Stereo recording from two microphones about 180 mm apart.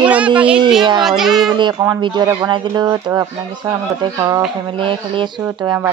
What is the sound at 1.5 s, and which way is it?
Speech, 25° right (ahead or behind).